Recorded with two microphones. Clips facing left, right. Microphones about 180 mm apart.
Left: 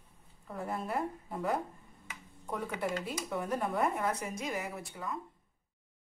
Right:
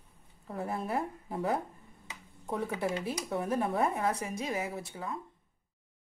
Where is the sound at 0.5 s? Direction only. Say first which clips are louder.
Right 2 dB; 25° right (ahead or behind).